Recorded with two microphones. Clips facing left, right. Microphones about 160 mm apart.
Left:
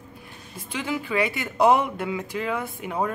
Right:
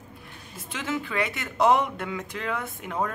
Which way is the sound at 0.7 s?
Centre (ahead or behind).